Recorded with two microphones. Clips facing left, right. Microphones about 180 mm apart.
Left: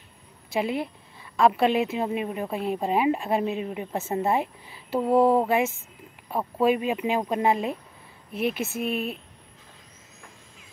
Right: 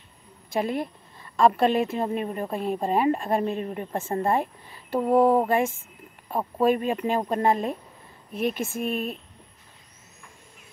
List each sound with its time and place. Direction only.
0.5 s a woman's voice: 10° left (ahead or behind)
5.0 s speech: 20° right (ahead or behind)
6.3 s a woman's voice: 5° left (ahead or behind)